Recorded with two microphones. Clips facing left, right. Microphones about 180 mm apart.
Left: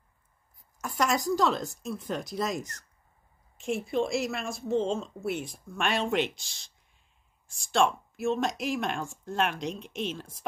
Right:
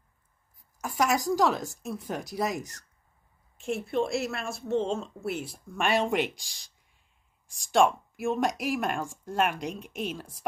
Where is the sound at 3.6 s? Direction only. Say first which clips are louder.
Even; centre (ahead or behind).